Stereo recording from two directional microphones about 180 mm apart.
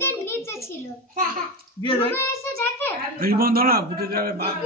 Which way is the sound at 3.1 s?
55° right (ahead or behind).